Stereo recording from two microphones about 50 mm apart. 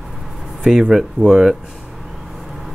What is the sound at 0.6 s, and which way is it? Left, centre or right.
Speech, centre.